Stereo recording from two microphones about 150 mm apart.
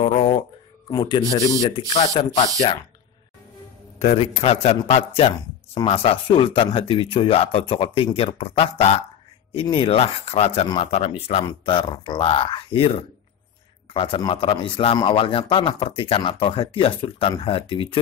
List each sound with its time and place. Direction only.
0.0 s a sound: 45° left (ahead or behind)
0.8 s speech: 30° left (ahead or behind)
4.0 s a man's voice: 45° left (ahead or behind)